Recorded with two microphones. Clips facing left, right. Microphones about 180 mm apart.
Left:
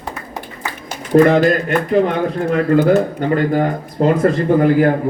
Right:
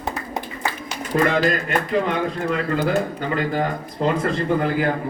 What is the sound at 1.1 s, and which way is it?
Speech, 50° left (ahead or behind).